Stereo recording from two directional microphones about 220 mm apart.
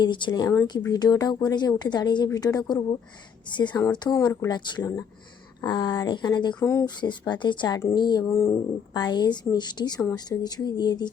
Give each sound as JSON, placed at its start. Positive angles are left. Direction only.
{"t": 0.0, "sound": "speech", "side_deg": 20}